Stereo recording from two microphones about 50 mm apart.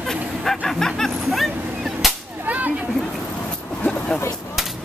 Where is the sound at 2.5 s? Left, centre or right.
Right.